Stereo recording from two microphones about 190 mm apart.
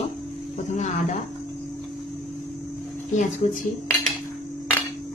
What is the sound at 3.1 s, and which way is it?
Speech, 45° left (ahead or behind).